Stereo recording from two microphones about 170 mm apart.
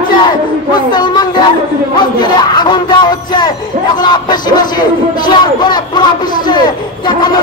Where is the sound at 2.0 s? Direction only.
25° left (ahead or behind).